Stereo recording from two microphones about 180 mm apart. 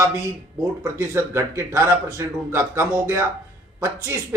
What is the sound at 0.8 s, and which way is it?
A man's voice, 15° right (ahead or behind).